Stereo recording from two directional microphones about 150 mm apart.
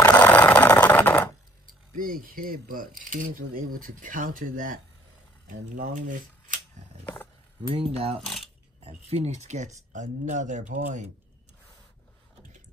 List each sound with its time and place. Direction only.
0.0 s a sound: 15° left (ahead or behind)
2.0 s speech: 70° right (ahead or behind)
7.6 s speech: 40° right (ahead or behind); by 11.1 s 60° right (ahead or behind)